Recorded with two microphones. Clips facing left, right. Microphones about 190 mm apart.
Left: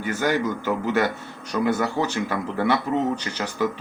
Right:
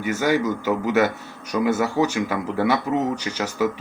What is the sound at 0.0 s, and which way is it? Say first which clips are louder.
Speech: right 2 dB; 10° right (ahead or behind).